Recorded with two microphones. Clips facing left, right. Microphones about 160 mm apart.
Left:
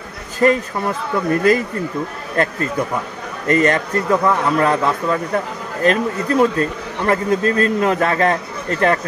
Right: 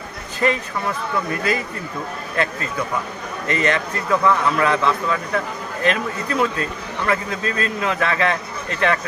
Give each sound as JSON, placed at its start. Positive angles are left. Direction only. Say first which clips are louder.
{"t": 0.4, "sound": "a man's voice", "louder": "left 5 dB", "side_deg": 45}